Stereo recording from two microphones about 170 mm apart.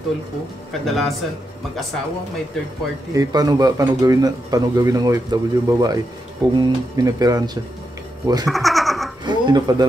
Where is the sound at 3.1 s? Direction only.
20° right (ahead or behind).